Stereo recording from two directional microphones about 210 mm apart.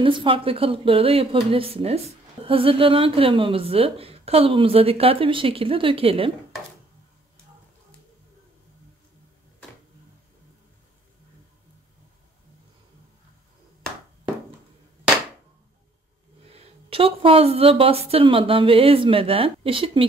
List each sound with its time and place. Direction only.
0.0 s a woman's voice: 25° right (ahead or behind)
16.5 s a woman's voice: 25° right (ahead or behind)